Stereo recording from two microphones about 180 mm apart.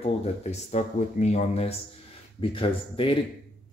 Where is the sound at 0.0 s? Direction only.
35° left (ahead or behind).